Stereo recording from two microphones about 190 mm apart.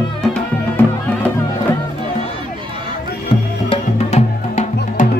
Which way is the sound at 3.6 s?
30° left (ahead or behind).